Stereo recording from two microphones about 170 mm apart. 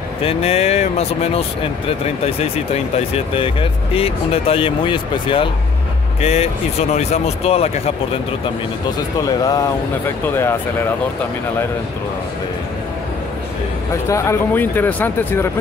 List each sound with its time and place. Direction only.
0.2 s speech: 35° left (ahead or behind)
9.2 s speech: 20° left (ahead or behind)
14.0 s speech: 15° left (ahead or behind)